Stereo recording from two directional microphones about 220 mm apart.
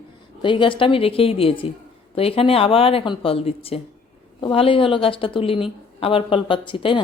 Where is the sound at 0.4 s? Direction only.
20° left (ahead or behind).